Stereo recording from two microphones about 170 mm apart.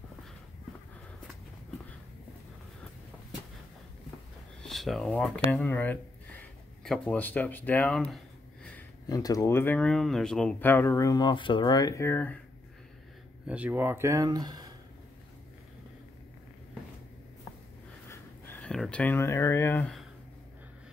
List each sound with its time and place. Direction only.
4.6 s speech: centre (ahead or behind)
9.0 s speech: 20° left (ahead or behind)
13.5 s speech: 10° right (ahead or behind)
18.0 s a sound: 15° left (ahead or behind)